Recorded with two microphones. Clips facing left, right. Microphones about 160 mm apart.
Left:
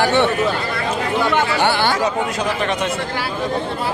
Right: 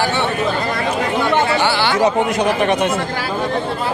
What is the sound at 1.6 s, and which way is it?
Speech, 50° left (ahead or behind).